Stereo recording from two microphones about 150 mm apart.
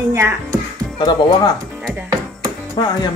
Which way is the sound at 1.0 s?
30° left (ahead or behind).